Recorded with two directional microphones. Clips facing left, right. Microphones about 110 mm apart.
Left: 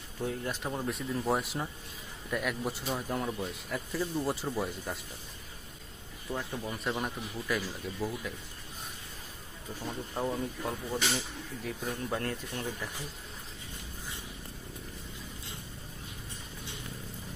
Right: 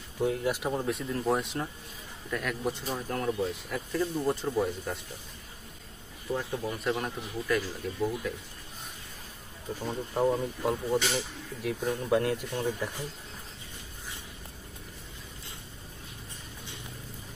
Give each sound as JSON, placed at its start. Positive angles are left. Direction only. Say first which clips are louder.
{"t": 0.2, "sound": "a man's voice", "louder": "right 6 dB", "side_deg": -10}
{"t": 6.3, "sound": "speech", "louder": "right 4 dB", "side_deg": 0}
{"t": 9.8, "sound": "speech", "louder": "right 7 dB", "side_deg": -20}